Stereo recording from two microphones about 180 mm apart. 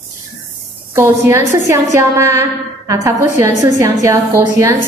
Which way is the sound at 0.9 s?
15° right (ahead or behind).